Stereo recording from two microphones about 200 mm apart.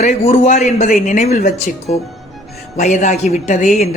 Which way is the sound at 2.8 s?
35° left (ahead or behind).